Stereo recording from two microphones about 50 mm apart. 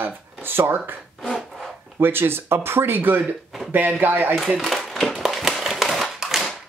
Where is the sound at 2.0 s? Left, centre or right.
Right.